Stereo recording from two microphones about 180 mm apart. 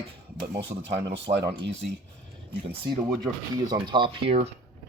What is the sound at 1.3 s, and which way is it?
Speech, 75° right (ahead or behind).